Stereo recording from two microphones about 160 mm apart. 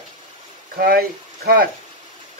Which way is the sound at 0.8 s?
70° right (ahead or behind).